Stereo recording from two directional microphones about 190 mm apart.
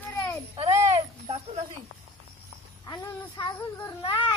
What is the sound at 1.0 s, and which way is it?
Speech, 30° right (ahead or behind).